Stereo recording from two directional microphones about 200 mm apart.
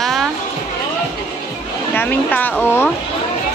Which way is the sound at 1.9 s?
10° left (ahead or behind).